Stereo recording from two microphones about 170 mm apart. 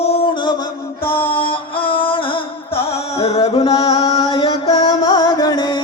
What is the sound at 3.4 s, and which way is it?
Music, 25° left (ahead or behind).